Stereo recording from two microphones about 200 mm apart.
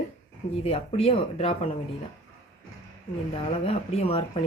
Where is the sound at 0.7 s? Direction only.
30° left (ahead or behind).